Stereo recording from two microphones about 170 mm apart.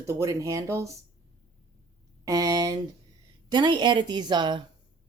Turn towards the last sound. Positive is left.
turn(degrees=-25)  # may be behind; listen again after turning